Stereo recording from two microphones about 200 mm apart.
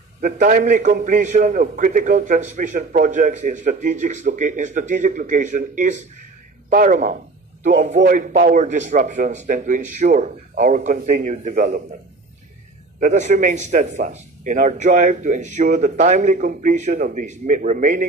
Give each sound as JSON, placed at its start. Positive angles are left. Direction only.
{"t": 0.2, "sound": "a man's voice", "side_deg": -45}
{"t": 13.0, "sound": "a man's voice", "side_deg": -35}